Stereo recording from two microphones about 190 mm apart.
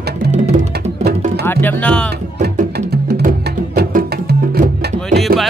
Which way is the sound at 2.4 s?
55° right (ahead or behind).